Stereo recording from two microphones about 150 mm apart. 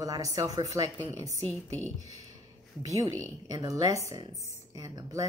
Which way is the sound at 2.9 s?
20° right (ahead or behind).